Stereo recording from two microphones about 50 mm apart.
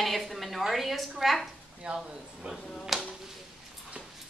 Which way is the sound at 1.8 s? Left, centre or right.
Right.